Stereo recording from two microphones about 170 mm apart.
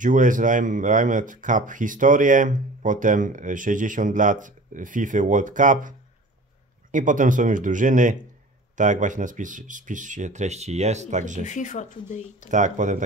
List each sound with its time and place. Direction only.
0.0 s speech: 50° right (ahead or behind)
11.4 s speech: 45° left (ahead or behind)
12.4 s speech: 45° right (ahead or behind)